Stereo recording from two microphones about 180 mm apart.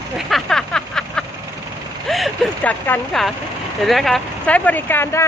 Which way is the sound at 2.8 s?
5° left (ahead or behind).